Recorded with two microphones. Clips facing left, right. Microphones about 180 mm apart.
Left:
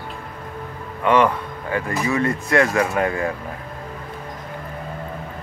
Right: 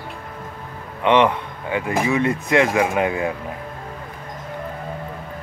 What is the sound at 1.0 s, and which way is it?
Speech, 20° right (ahead or behind).